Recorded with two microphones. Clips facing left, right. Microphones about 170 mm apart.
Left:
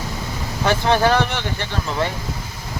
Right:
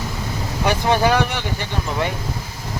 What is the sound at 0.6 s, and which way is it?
Speech, 15° right (ahead or behind).